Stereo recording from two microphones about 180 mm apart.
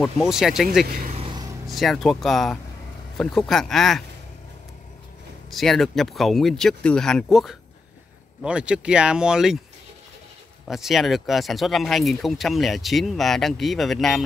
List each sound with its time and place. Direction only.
0.0 s speech: centre (ahead or behind)
1.0 s vehicle: 35° right (ahead or behind)
1.3 s vehicle: 20° right (ahead or behind)
1.7 s speech: centre (ahead or behind)
5.5 s speech: centre (ahead or behind)
10.7 s speech: centre (ahead or behind)